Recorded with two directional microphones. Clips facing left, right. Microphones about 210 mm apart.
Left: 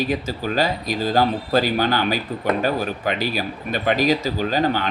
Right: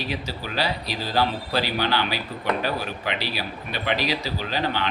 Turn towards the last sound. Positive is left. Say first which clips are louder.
# left 6 dB
turn(degrees=45)  # may be behind; listen again after turning